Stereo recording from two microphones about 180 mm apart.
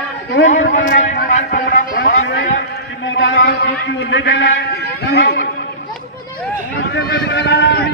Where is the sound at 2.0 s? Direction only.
70° left (ahead or behind).